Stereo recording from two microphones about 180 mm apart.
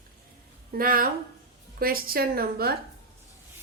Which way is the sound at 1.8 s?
55° right (ahead or behind).